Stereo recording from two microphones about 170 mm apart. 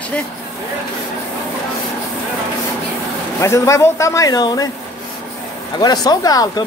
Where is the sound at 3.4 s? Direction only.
15° left (ahead or behind).